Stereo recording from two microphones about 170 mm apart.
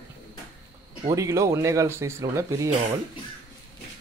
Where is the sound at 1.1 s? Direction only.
20° right (ahead or behind).